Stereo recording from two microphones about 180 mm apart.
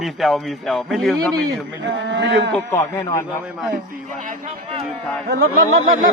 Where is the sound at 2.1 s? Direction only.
75° right (ahead or behind).